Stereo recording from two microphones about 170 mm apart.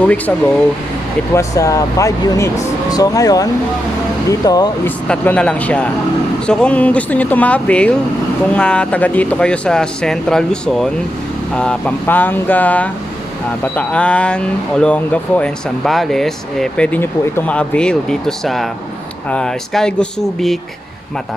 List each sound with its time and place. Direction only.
1.3 s speech: 20° left (ahead or behind)
4.8 s speech: 10° left (ahead or behind)